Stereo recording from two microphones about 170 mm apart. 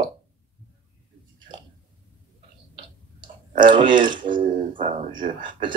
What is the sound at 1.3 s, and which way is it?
Chewing, 25° right (ahead or behind).